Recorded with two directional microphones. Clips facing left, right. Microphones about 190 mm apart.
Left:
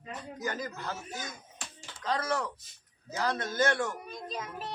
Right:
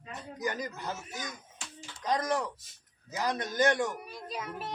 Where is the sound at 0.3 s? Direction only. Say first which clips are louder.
Right 2 dB; 15° right (ahead or behind).